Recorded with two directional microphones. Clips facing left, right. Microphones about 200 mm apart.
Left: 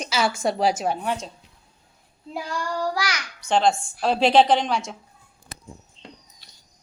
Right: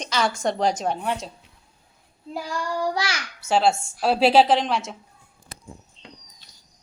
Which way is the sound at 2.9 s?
25° right (ahead or behind).